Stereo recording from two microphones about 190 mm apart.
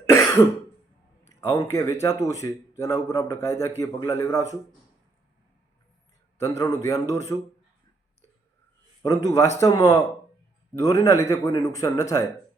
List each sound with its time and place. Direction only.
0.0 s cough: 15° left (ahead or behind)
1.2 s speech: 15° left (ahead or behind)
6.4 s speech: 15° left (ahead or behind)
9.0 s a man's voice: 15° left (ahead or behind)